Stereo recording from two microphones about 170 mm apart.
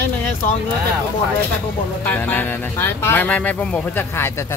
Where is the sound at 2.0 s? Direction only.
10° left (ahead or behind).